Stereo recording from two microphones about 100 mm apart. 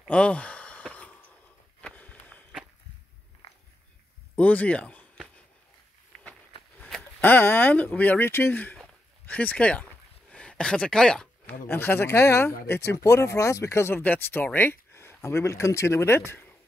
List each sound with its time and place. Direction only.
0.1 s sigh: 10° left (ahead or behind)
1.8 s a sound: 15° left (ahead or behind)
4.4 s speech: 15° left (ahead or behind)
7.2 s speech: 20° left (ahead or behind)
10.3 s a sound: 10° left (ahead or behind)
11.6 s speech: 20° left (ahead or behind)